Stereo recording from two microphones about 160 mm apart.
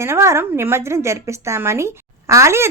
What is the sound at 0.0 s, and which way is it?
A woman's voice, 15° right (ahead or behind).